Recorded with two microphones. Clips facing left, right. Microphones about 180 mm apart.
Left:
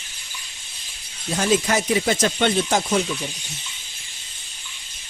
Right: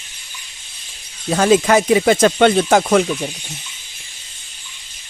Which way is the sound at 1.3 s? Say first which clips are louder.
Right 7 dB; 90° right.